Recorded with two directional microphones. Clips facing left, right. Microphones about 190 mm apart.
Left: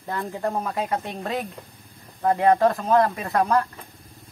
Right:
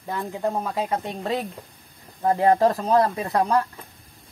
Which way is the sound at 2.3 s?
25° right (ahead or behind).